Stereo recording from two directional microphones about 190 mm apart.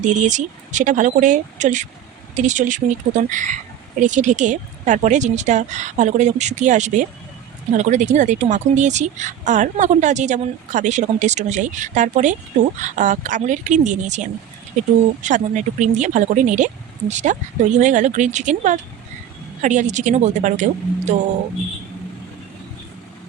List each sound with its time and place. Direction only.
0.0 s speech: 40° right (ahead or behind)